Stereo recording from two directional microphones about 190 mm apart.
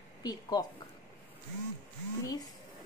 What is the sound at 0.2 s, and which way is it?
Speech, 20° left (ahead or behind).